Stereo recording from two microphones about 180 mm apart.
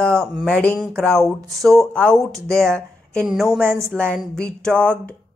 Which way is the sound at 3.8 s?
5° left (ahead or behind).